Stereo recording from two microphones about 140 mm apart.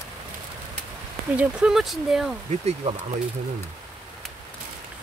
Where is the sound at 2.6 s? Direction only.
40° right (ahead or behind).